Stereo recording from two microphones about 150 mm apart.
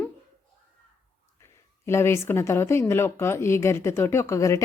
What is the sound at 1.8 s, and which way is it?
Speech, 15° left (ahead or behind).